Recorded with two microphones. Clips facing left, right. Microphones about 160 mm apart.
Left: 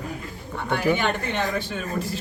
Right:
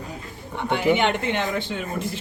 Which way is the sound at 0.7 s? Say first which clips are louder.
Right 2 dB; 20° right (ahead or behind).